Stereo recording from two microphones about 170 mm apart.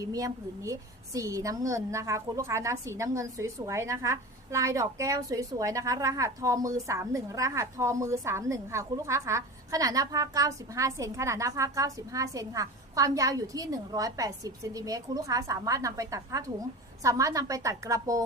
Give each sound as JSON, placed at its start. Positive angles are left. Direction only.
{"t": 0.0, "sound": "a woman's voice", "side_deg": -20}